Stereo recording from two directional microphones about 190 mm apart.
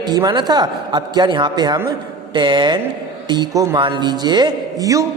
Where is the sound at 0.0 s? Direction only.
20° right (ahead or behind).